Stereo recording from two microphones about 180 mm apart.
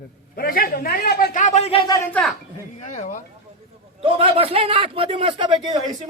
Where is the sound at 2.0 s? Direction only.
10° left (ahead or behind).